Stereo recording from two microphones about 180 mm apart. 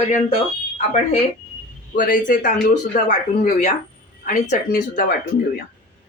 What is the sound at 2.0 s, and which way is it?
Speech, 50° left (ahead or behind).